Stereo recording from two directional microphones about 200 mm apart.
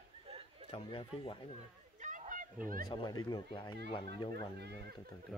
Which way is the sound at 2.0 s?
40° right (ahead or behind).